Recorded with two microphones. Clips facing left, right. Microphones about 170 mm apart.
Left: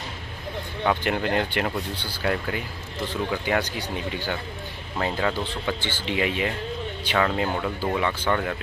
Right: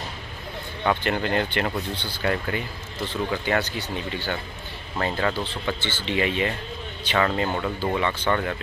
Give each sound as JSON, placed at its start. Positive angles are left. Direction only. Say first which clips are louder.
{"t": 0.8, "sound": "speech", "louder": "even", "side_deg": 5}